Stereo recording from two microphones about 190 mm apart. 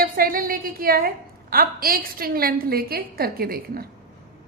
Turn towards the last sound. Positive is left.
turn(degrees=-50)  # may be behind; listen again after turning